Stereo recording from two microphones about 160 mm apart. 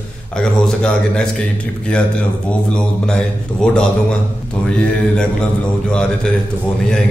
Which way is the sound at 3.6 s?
5° left (ahead or behind).